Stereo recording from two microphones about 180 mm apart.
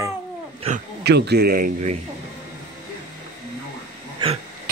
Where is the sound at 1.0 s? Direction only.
65° right (ahead or behind).